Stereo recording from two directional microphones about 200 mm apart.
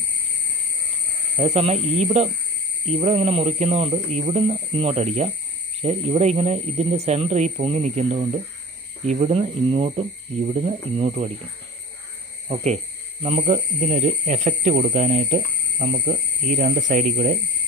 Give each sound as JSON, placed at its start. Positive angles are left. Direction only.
{"t": 1.4, "sound": "speech", "side_deg": -30}
{"t": 12.4, "sound": "speech", "side_deg": -35}